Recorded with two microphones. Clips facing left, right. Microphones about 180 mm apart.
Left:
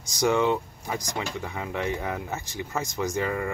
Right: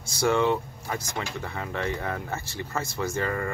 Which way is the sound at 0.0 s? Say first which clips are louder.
Even; 15° left (ahead or behind).